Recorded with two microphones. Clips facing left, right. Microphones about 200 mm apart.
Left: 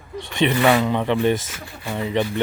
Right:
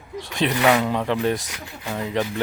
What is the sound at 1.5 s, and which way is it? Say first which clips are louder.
Speech: left 1 dB; 15° right (ahead or behind).